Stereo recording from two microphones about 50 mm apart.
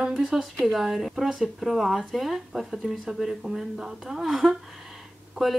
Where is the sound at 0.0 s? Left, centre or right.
Centre.